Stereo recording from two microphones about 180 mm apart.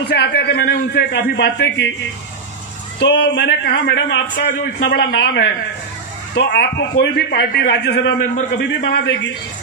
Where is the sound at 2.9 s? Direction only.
75° left (ahead or behind).